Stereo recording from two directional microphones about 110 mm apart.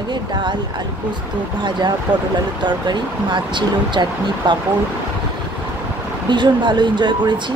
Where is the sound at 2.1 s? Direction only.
15° right (ahead or behind).